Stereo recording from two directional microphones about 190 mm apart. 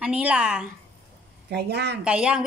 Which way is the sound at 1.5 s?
60° right (ahead or behind).